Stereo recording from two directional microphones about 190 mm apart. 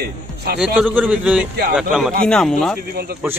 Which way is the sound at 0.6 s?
10° right (ahead or behind).